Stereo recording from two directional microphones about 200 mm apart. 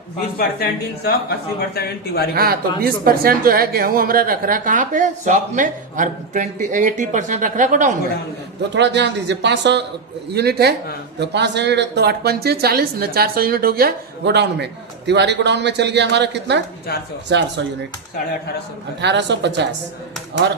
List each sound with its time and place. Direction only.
0.3 s speech: 50° left (ahead or behind)
2.3 s a woman's voice: 50° right (ahead or behind)
8.7 s speech: 60° right (ahead or behind)
19.0 s speech: 60° right (ahead or behind)